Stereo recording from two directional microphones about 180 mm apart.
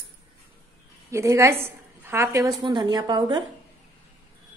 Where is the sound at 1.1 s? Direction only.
15° right (ahead or behind).